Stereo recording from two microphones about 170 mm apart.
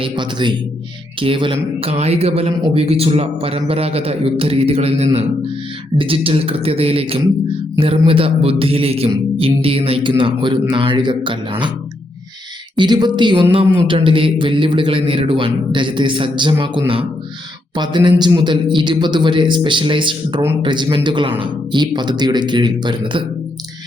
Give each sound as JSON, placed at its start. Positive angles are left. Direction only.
{"t": 0.0, "sound": "a man's voice", "side_deg": -25}
{"t": 12.7, "sound": "a man's voice", "side_deg": -25}